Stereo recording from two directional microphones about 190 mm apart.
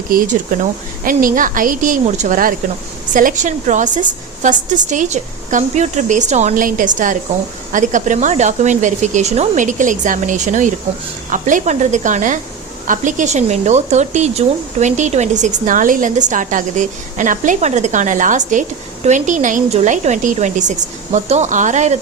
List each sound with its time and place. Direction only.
0.1 s a woman's voice: 45° right (ahead or behind)